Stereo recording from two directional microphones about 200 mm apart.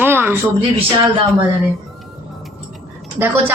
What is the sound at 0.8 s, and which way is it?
Speech, 25° right (ahead or behind).